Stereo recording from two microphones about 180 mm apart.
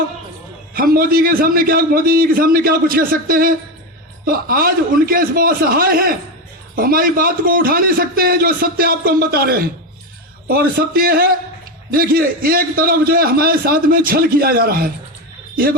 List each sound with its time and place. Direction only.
0.7 s a man's voice: 55° right (ahead or behind)